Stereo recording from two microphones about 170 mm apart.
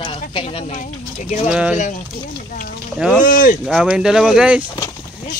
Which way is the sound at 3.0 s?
10° right (ahead or behind).